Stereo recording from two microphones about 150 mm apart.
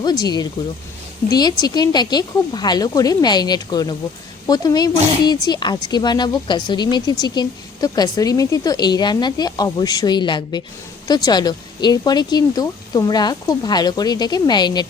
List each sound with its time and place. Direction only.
0.0 s speech: 25° left (ahead or behind)